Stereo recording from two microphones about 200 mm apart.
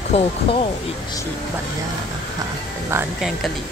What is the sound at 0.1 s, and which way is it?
Speech, 30° left (ahead or behind).